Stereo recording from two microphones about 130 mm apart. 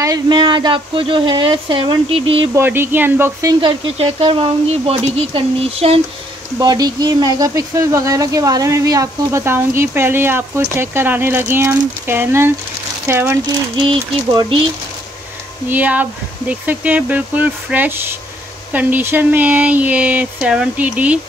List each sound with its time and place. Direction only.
0.0 s speech: 30° right (ahead or behind)
2.5 s speech: 15° right (ahead or behind)
3.6 s speech: 45° right (ahead or behind)
6.6 s speech: 30° right (ahead or behind)
13.7 s speech: 40° right (ahead or behind)
15.7 s speech: 15° right (ahead or behind)